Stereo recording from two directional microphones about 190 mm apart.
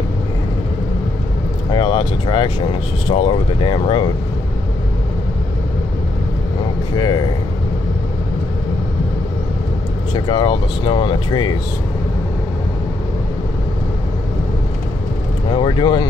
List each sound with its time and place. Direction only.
1.7 s speech: 25° left (ahead or behind)
10.1 s speech: 25° left (ahead or behind)
15.5 s speech: 25° left (ahead or behind)